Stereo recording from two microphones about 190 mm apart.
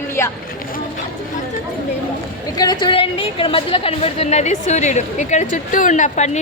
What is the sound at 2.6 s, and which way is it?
A woman's voice, 20° left (ahead or behind).